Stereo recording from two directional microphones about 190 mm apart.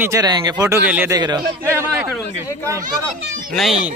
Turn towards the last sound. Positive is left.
turn(degrees=0)  # may be behind; listen again after turning